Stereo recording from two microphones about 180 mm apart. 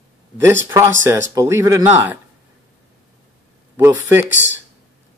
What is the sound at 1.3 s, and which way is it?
Speech, 15° right (ahead or behind).